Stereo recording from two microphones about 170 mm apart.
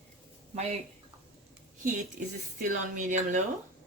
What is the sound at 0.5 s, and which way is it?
Speech, 40° right (ahead or behind).